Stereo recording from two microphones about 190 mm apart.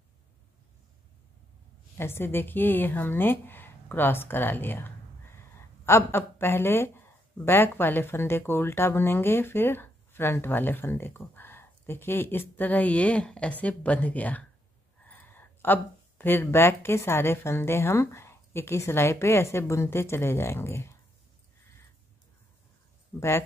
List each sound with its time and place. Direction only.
2.0 s speech: 10° left (ahead or behind)